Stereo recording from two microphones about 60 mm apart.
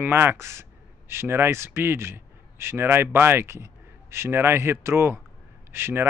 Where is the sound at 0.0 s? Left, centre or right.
Right.